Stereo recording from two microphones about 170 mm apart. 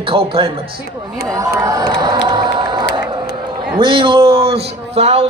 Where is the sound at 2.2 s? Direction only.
25° right (ahead or behind).